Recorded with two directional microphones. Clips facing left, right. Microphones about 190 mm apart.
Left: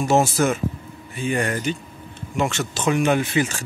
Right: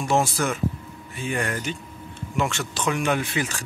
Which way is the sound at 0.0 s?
5° left (ahead or behind).